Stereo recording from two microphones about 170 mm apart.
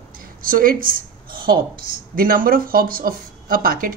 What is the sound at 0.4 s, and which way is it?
Speech, 55° right (ahead or behind).